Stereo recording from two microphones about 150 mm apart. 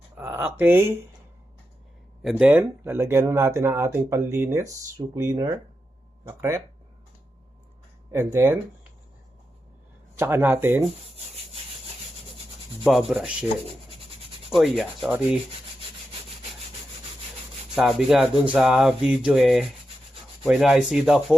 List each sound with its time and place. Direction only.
0.2 s speech: 15° right (ahead or behind)
2.4 s speech: 15° right (ahead or behind)
8.1 s speech: 15° right (ahead or behind)
10.2 s speech: 15° right (ahead or behind)
13.1 s rub: 5° right (ahead or behind)
14.5 s rub: centre (ahead or behind)
17.7 s rub: centre (ahead or behind)